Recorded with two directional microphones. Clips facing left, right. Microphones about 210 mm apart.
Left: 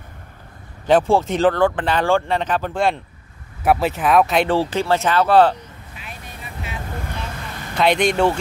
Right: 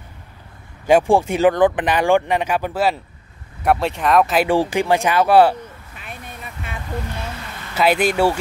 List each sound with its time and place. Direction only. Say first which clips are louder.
0.8 s speech: right 1 dB; 10° right (ahead or behind)
4.5 s speech: right 2 dB; 15° right (ahead or behind)
5.9 s vehicle: right 2 dB; 50° right (ahead or behind)
7.7 s speech: even; 5° right (ahead or behind)